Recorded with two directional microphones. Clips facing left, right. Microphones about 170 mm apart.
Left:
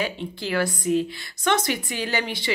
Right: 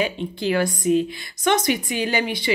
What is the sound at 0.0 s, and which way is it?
A woman's voice, 20° right (ahead or behind).